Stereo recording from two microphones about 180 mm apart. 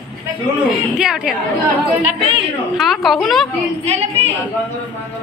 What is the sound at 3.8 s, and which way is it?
Speech, 35° right (ahead or behind).